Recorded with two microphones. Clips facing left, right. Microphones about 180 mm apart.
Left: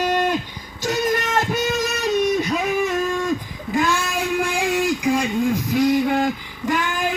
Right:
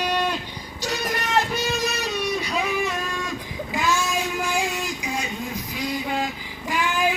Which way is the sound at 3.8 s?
60° left (ahead or behind).